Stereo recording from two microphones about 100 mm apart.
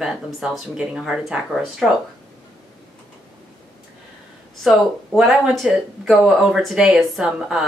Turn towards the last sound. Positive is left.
turn(degrees=-5)  # may be behind; listen again after turning